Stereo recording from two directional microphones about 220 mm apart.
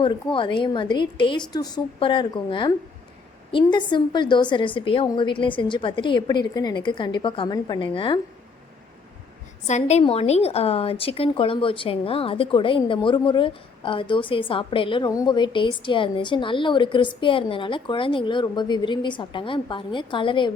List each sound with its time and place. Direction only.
0.0 s a woman's voice: 20° left (ahead or behind)
9.6 s a woman's voice: 30° left (ahead or behind)